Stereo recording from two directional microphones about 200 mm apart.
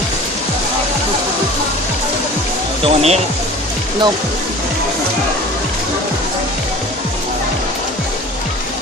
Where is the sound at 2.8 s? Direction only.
30° right (ahead or behind).